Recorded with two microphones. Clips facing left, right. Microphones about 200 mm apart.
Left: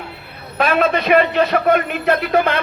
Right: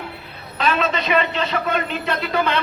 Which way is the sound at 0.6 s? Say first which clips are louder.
Left 5 dB; 55° left (ahead or behind).